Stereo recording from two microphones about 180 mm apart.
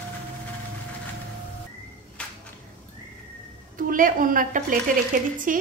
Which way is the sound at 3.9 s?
50° right (ahead or behind).